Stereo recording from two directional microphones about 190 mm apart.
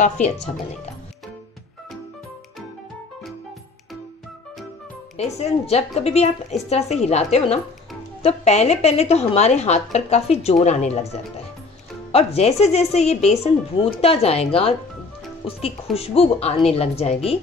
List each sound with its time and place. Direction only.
0.2 s speech: 35° left (ahead or behind)
5.1 s speech: 35° left (ahead or behind)